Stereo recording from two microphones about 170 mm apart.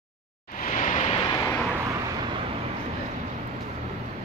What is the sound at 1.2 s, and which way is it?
Vehicle, 20° left (ahead or behind).